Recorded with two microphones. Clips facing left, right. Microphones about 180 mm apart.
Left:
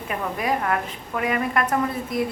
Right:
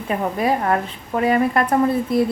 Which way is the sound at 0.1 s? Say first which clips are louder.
Right 5 dB; 30° right (ahead or behind).